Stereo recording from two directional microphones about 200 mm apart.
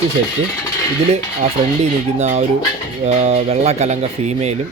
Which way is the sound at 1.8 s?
35° right (ahead or behind).